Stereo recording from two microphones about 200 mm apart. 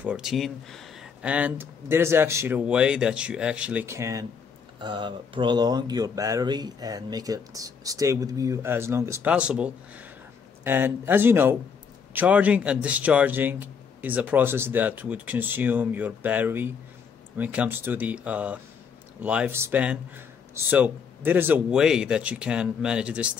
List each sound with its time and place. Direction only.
0.0 s speech: 5° right (ahead or behind)